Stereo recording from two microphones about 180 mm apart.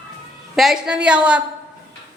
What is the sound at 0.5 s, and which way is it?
Speech, centre (ahead or behind).